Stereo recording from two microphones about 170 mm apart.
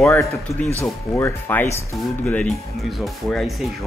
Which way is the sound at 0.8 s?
15° left (ahead or behind).